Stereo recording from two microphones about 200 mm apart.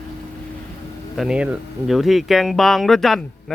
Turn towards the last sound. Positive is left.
turn(degrees=0)  # may be behind; listen again after turning